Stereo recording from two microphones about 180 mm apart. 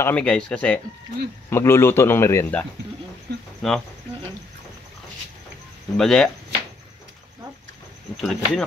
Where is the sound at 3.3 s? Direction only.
65° right (ahead or behind).